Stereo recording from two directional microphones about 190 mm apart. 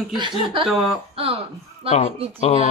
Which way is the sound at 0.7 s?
Centre (ahead or behind).